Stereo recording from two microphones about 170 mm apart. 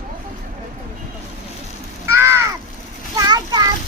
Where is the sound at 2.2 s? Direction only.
15° right (ahead or behind).